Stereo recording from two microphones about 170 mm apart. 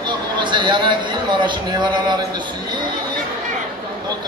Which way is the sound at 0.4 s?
30° right (ahead or behind).